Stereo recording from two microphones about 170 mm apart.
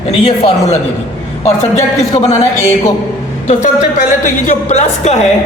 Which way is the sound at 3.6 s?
45° left (ahead or behind).